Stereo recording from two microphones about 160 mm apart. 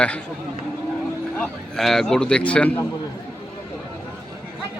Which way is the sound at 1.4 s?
Centre (ahead or behind).